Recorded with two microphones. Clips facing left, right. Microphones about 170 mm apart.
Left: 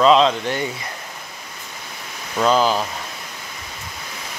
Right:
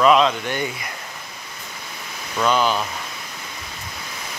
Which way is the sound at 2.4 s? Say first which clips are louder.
Left 2 dB; 35° left (ahead or behind).